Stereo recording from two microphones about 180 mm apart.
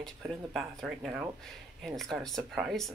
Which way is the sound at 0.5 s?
5° right (ahead or behind).